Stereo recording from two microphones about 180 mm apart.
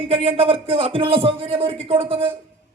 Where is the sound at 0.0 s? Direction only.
30° right (ahead or behind).